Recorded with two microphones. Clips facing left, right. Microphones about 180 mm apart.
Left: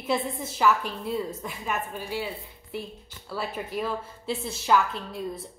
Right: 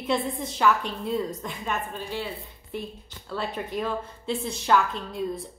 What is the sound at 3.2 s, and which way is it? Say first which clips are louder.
A woman's voice: right 1 dB; 5° left (ahead or behind).